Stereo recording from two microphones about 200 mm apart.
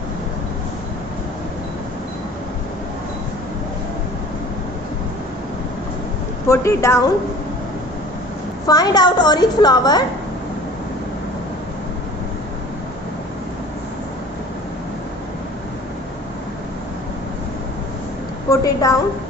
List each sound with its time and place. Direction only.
6.5 s a woman's voice: 15° left (ahead or behind)
8.6 s a woman's voice: 20° left (ahead or behind)
18.5 s a woman's voice: 15° left (ahead or behind)